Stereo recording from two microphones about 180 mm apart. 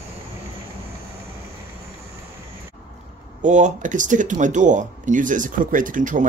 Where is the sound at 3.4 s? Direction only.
45° right (ahead or behind).